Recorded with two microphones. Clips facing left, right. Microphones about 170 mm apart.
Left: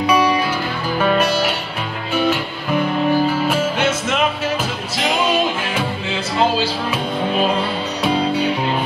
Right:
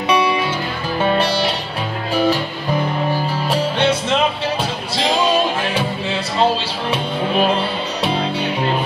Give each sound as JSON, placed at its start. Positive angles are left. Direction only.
{"t": 1.0, "sound": "music", "side_deg": -30}
{"t": 3.4, "sound": "music", "side_deg": -35}